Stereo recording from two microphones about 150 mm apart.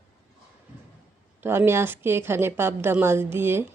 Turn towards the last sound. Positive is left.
turn(degrees=-15)  # may be behind; listen again after turning